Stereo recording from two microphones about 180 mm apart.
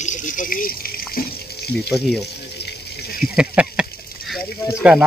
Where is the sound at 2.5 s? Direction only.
65° left (ahead or behind).